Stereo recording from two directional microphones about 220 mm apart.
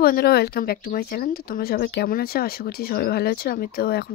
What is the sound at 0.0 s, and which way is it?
Speech, 45° left (ahead or behind).